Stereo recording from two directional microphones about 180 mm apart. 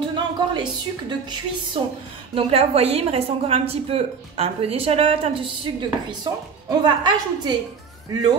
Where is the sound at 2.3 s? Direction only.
30° right (ahead or behind).